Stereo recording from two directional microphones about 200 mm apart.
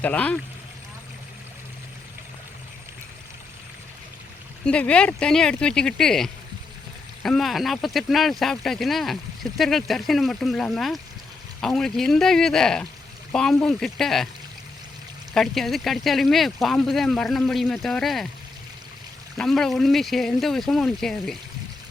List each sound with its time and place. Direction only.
0.0 s speech: 5° left (ahead or behind)
4.6 s speech: 5° left (ahead or behind)
15.3 s speech: centre (ahead or behind)
19.4 s speech: centre (ahead or behind)